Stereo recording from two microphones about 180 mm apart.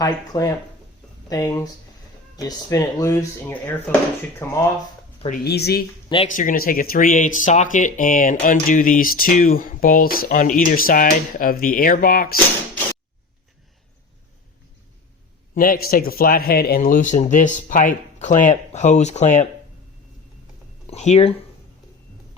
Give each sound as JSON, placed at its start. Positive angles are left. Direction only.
{"t": 0.0, "sound": "speech", "side_deg": 20}
{"t": 5.3, "sound": "a woman's voice", "side_deg": 65}
{"t": 6.3, "sound": "speech", "side_deg": 50}
{"t": 15.5, "sound": "speech", "side_deg": 50}
{"t": 20.8, "sound": "speech", "side_deg": 40}